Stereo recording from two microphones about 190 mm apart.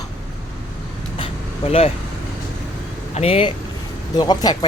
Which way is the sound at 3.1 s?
30° left (ahead or behind).